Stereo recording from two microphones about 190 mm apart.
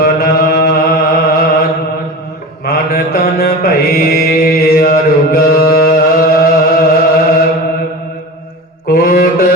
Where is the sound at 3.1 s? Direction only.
55° left (ahead or behind).